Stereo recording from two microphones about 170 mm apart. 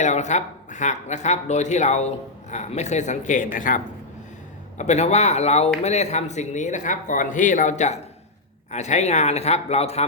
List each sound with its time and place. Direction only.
0.0 s speech: 45° left (ahead or behind)
4.8 s a man's voice: 40° left (ahead or behind)